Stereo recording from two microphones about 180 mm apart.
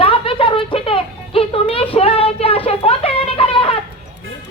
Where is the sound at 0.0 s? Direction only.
30° left (ahead or behind).